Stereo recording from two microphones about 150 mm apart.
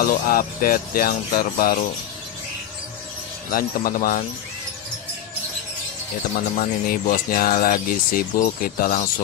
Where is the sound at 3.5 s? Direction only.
75° left (ahead or behind).